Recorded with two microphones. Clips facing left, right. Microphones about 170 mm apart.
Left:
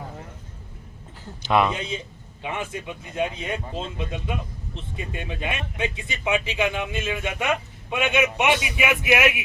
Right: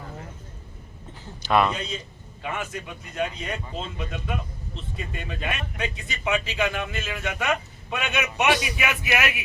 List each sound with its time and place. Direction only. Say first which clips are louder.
1.4 s a man's voice: left 1 dB; 20° left (ahead or behind)